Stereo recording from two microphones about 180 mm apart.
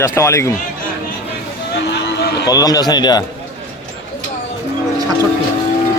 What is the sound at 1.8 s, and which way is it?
Run, 70° left (ahead or behind).